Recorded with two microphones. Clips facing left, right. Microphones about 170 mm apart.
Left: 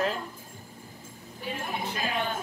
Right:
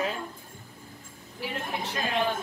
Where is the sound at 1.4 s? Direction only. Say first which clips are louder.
Right 1 dB; 90° right.